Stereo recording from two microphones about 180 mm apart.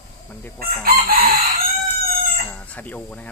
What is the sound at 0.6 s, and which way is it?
Chicken, 55° right (ahead or behind).